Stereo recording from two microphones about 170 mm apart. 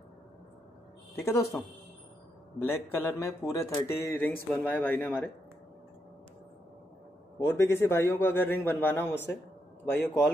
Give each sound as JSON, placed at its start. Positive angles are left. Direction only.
{"t": 1.1, "sound": "speech", "side_deg": 20}
{"t": 2.6, "sound": "speech", "side_deg": 15}
{"t": 7.3, "sound": "speech", "side_deg": 15}